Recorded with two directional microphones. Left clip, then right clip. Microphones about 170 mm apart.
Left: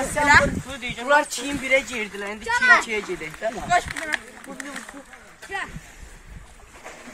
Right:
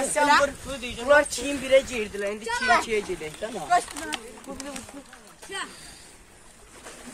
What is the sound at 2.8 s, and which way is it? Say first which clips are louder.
Speech: left 1 dB; 65° left (ahead or behind).